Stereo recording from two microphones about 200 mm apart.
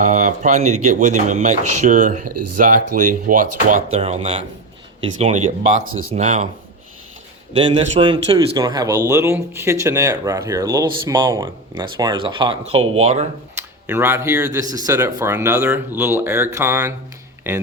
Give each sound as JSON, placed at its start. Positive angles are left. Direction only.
{"t": 0.1, "sound": "speech", "side_deg": -40}
{"t": 3.8, "sound": "speech", "side_deg": -30}
{"t": 6.1, "sound": "speech", "side_deg": -35}
{"t": 7.5, "sound": "a man's voice", "side_deg": -25}
{"t": 13.6, "sound": "a man's voice", "side_deg": -10}